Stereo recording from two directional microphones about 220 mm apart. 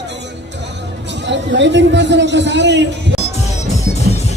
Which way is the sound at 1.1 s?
55° right (ahead or behind).